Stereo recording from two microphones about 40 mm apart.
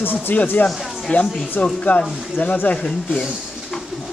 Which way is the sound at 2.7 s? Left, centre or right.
Left.